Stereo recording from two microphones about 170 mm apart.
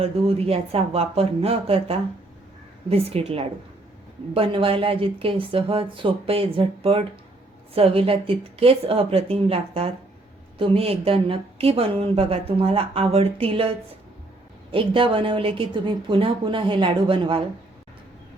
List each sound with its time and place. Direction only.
0.0 s speech: 35° right (ahead or behind)